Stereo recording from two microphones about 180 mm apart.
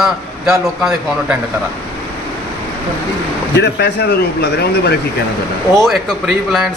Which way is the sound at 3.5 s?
70° left (ahead or behind).